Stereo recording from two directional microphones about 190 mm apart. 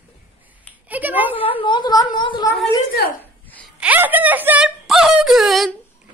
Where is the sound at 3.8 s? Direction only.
10° right (ahead or behind).